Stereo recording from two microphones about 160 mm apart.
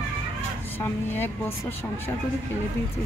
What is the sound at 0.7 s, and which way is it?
Speech, 15° left (ahead or behind).